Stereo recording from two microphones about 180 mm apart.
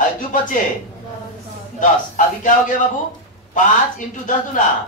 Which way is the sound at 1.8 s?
45° left (ahead or behind).